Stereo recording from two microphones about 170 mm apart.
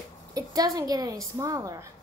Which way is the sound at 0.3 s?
20° right (ahead or behind).